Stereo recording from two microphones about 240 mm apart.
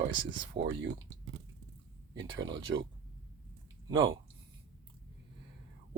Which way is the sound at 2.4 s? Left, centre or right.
Centre.